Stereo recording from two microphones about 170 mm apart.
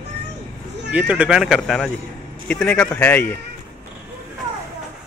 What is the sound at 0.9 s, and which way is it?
A man's voice, 10° right (ahead or behind).